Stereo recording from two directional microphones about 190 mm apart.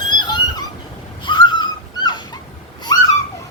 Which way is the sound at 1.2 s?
25° left (ahead or behind).